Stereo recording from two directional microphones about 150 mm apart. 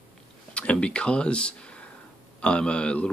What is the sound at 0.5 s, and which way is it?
Speech, 10° left (ahead or behind).